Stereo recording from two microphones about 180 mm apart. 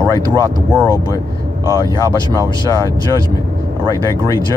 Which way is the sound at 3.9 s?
15° right (ahead or behind).